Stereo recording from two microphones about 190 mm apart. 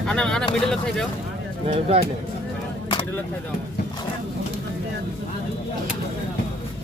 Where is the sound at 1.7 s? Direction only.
35° right (ahead or behind).